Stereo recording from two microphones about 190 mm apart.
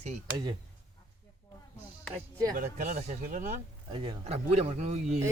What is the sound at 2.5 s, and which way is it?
Speech, 40° right (ahead or behind).